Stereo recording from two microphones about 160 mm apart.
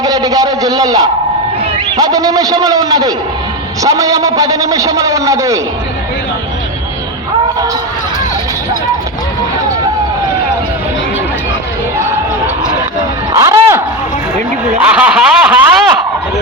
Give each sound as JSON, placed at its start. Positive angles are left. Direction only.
{"t": 0.0, "sound": "a man's voice", "side_deg": -25}
{"t": 13.3, "sound": "music", "side_deg": -20}
{"t": 14.8, "sound": "speech", "side_deg": -10}